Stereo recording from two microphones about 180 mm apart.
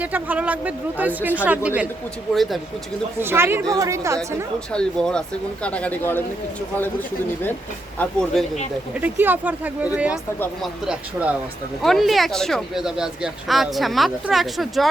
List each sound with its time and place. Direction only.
0.0 s speech: 10° right (ahead or behind)
3.2 s speech: 15° right (ahead or behind)
4.7 s a man's voice: 5° left (ahead or behind)
7.9 s speech: 5° left (ahead or behind)
9.0 s speech: 10° right (ahead or behind)